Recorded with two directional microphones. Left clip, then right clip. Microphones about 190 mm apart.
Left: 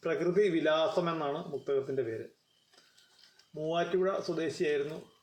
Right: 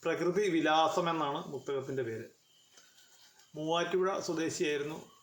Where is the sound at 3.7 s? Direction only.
15° right (ahead or behind).